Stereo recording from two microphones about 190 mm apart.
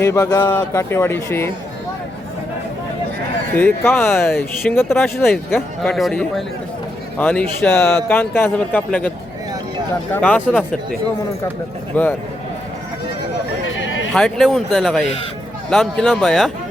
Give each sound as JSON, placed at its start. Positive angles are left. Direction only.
{"t": 0.0, "sound": "a man's voice", "side_deg": 15}
{"t": 3.5, "sound": "a man's voice", "side_deg": 10}
{"t": 5.2, "sound": "a man's voice", "side_deg": 0}
{"t": 11.9, "sound": "a man's voice", "side_deg": 10}
{"t": 13.7, "sound": "chatter", "side_deg": 85}
{"t": 14.1, "sound": "speech", "side_deg": 0}